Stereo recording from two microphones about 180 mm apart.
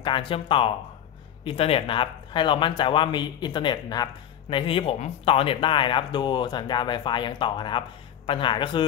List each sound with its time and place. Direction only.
0.0 s speech: 30° left (ahead or behind)